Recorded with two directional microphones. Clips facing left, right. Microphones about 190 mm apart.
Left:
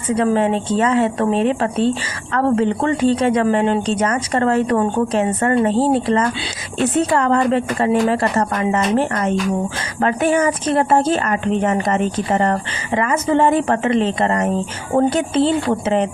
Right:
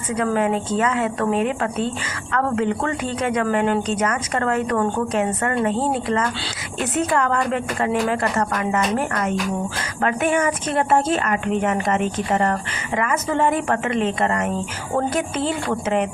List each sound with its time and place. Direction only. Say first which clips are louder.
0.3 s a woman's voice: left 3 dB; 30° left (ahead or behind)